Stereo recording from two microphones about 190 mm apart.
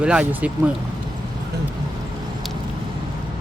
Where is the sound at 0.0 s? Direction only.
5° right (ahead or behind).